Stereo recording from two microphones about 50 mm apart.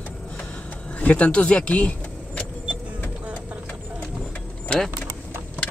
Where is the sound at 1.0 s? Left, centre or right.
Left.